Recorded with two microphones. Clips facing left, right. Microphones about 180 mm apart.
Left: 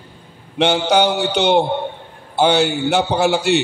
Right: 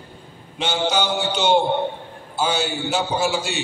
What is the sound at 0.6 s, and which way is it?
A man's voice, 60° left (ahead or behind).